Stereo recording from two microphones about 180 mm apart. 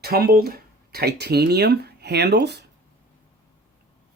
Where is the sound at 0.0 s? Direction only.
60° right (ahead or behind).